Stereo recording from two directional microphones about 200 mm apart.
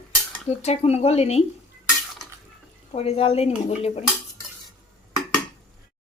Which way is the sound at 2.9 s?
30° left (ahead or behind).